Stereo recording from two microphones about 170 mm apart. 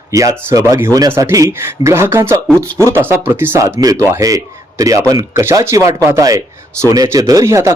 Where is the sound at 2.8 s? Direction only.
15° right (ahead or behind).